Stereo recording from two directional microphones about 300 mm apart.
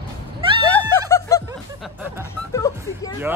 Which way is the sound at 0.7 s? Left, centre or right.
Centre.